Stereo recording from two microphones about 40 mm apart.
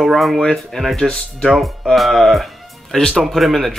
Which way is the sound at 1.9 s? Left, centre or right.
Centre.